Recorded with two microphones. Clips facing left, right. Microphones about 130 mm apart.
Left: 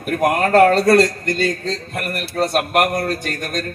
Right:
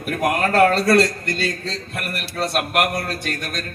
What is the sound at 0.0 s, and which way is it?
A man's voice, 45° left (ahead or behind).